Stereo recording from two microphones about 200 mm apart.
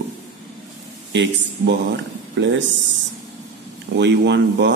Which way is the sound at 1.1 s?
65° right (ahead or behind).